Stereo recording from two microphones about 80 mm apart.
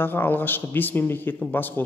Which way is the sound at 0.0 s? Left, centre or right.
Left.